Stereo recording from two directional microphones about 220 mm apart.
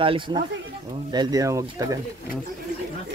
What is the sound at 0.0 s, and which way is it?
Speech, 25° right (ahead or behind).